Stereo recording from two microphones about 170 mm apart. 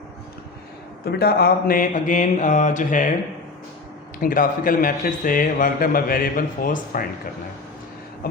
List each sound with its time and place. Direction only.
1.0 s mantra: 65° left (ahead or behind); by 3.1 s 50° left (ahead or behind)
4.2 s speech: 55° left (ahead or behind)
8.2 s speech: 60° left (ahead or behind)